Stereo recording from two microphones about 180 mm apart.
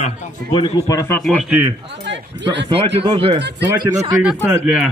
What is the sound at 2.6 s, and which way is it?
Speech, 30° right (ahead or behind).